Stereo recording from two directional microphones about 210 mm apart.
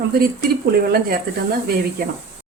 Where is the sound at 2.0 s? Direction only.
45° right (ahead or behind).